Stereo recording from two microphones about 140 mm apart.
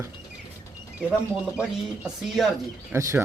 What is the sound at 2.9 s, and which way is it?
Speech, 20° right (ahead or behind).